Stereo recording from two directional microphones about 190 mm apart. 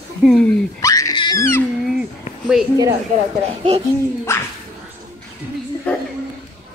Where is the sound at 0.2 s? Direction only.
5° left (ahead or behind).